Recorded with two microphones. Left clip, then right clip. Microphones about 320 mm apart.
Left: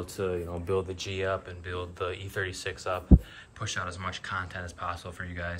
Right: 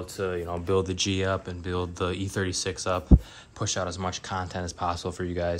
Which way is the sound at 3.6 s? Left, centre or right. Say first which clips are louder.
Right 5 dB; centre.